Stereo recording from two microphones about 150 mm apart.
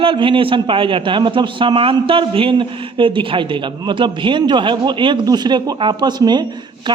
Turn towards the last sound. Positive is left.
turn(degrees=-30)  # may be behind; listen again after turning